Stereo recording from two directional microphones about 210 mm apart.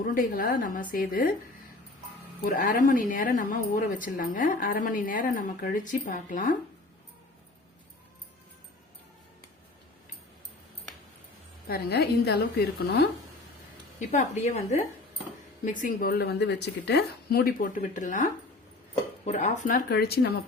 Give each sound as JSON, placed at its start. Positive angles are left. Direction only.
{"t": 0.0, "sound": "a woman's voice", "side_deg": 40}
{"t": 2.6, "sound": "a woman's voice", "side_deg": 40}
{"t": 11.7, "sound": "a woman's voice", "side_deg": 50}
{"t": 14.1, "sound": "a woman's voice", "side_deg": 35}